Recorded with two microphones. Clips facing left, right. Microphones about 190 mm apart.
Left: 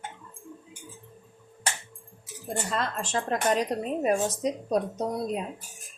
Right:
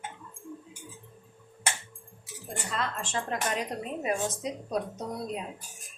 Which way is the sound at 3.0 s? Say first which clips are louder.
Left 4 dB; 40° left (ahead or behind).